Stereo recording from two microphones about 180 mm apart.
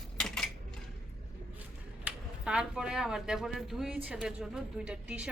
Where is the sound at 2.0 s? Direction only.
5° right (ahead or behind).